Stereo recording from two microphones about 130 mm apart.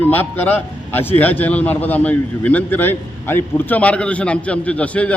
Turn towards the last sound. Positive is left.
turn(degrees=10)  # may be behind; listen again after turning